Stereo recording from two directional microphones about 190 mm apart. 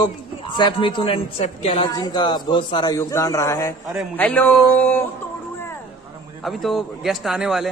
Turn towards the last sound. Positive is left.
turn(degrees=0)  # may be behind; listen again after turning